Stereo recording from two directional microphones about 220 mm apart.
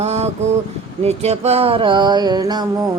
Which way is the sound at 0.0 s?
30° right (ahead or behind).